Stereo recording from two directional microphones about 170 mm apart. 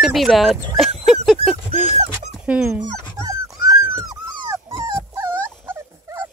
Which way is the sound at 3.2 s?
20° right (ahead or behind).